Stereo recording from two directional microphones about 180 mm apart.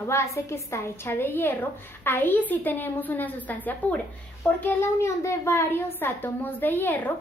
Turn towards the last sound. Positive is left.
turn(degrees=10)  # may be behind; listen again after turning